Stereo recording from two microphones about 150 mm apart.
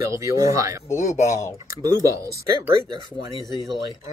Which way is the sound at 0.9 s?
20° left (ahead or behind).